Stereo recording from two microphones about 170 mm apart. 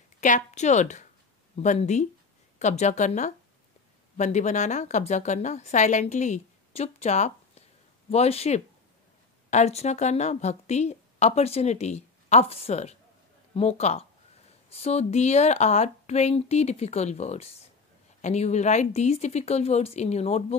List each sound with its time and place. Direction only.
0.2 s a woman's voice: 45° left (ahead or behind)